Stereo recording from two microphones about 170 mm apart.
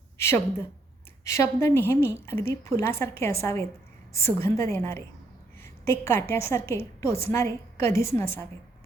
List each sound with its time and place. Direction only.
0.2 s a woman's voice: 15° left (ahead or behind)